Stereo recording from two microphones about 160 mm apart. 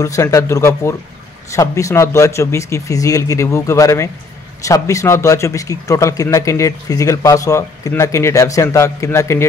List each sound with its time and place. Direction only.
0.0 s a man's voice: 20° left (ahead or behind)